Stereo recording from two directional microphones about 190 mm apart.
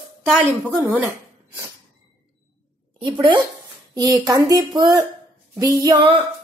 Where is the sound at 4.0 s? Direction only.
20° right (ahead or behind).